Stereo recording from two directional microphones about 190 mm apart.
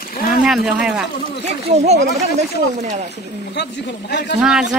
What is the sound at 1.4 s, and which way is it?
Speech, 35° right (ahead or behind).